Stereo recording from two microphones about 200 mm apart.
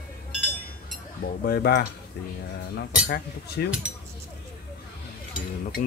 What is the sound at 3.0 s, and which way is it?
Speech, 50° left (ahead or behind).